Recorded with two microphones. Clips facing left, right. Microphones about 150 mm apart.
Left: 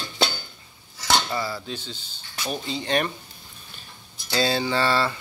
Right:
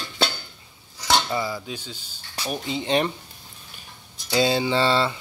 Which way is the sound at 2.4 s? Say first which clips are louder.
Right 2 dB; 15° right (ahead or behind).